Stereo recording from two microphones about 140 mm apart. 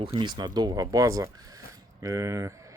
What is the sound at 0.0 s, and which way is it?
Speech, 35° right (ahead or behind).